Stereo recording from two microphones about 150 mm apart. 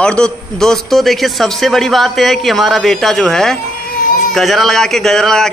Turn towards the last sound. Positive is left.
turn(degrees=5)  # may be behind; listen again after turning